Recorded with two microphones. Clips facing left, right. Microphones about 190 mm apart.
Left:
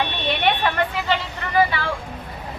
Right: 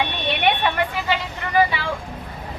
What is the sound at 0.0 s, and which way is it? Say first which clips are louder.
Vehicle: even; 15° right (ahead or behind).